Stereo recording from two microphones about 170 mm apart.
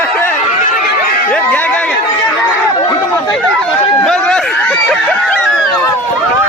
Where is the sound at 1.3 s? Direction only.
10° left (ahead or behind).